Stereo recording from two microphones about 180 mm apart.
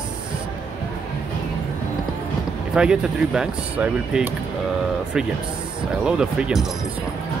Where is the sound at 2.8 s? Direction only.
5° right (ahead or behind).